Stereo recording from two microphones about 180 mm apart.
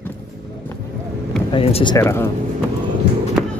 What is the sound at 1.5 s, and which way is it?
Speech, 30° left (ahead or behind).